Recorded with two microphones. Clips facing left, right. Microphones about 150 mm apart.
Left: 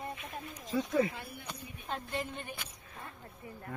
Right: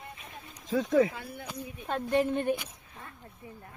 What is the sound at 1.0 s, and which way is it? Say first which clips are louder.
Speech: right 4 dB; 90° right.